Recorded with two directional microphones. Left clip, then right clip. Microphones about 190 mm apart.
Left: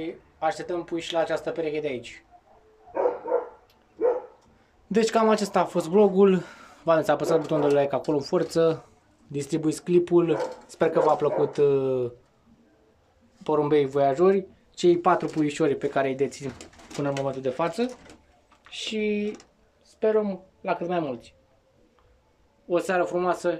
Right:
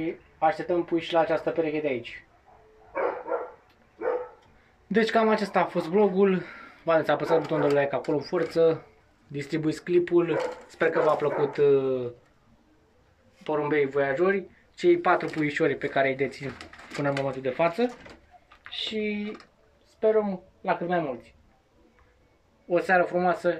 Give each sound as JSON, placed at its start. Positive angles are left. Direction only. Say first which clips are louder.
{"t": 0.0, "sound": "speech", "louder": "right 3 dB", "side_deg": 0}
{"t": 4.9, "sound": "speech", "louder": "left 1 dB", "side_deg": 10}
{"t": 13.4, "sound": "speech", "louder": "left 3 dB", "side_deg": 20}
{"t": 22.7, "sound": "speech", "louder": "right 2 dB", "side_deg": 15}